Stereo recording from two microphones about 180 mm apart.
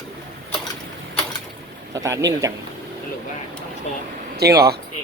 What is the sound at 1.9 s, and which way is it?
Speech, 15° right (ahead or behind).